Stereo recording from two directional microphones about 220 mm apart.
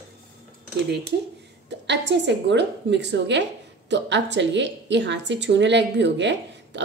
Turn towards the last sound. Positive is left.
turn(degrees=-50)  # may be behind; listen again after turning